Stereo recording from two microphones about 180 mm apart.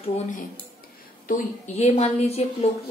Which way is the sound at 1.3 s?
40° left (ahead or behind).